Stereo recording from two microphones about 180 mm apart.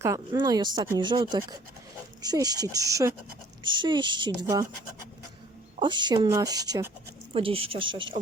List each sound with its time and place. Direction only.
0.0 s speech: 20° right (ahead or behind)
5.8 s speech: 25° right (ahead or behind)
7.3 s speech: 30° right (ahead or behind)